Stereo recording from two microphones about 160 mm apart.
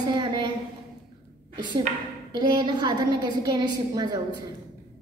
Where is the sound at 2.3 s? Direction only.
30° right (ahead or behind).